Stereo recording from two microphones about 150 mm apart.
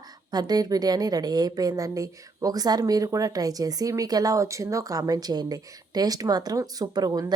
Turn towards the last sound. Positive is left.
turn(degrees=-25)  # may be behind; listen again after turning